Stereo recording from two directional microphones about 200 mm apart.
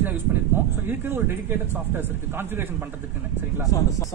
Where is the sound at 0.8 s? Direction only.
10° right (ahead or behind).